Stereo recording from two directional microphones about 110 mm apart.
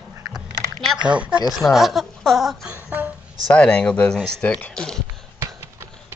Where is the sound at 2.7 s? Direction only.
15° right (ahead or behind).